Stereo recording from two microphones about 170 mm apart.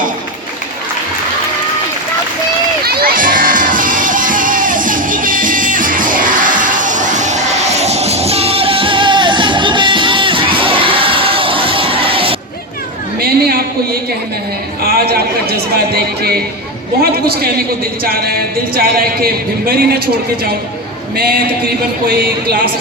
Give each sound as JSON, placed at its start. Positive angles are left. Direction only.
{"t": 2.8, "sound": "music", "side_deg": -65}
{"t": 13.1, "sound": "a sound", "side_deg": -65}
{"t": 15.1, "sound": "speech", "side_deg": -65}